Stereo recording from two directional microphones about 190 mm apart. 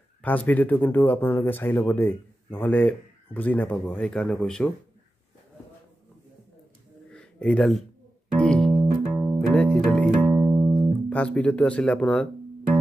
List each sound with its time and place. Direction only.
0.2 s speech: 10° left (ahead or behind)
7.1 s a sound: 5° left (ahead or behind)
8.4 s music: 5° left (ahead or behind)
8.9 s music: 5° right (ahead or behind)
9.5 s music: 5° left (ahead or behind)
10.3 s music: 25° right (ahead or behind)
11.1 s speech: 5° left (ahead or behind)